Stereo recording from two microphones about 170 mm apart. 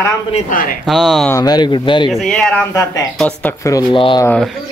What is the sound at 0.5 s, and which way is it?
Speech, 55° left (ahead or behind).